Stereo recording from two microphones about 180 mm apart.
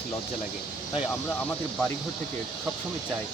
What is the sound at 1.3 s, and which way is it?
Speech, 5° left (ahead or behind).